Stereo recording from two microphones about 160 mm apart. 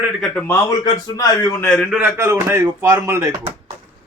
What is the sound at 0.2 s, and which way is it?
Speech, 5° left (ahead or behind).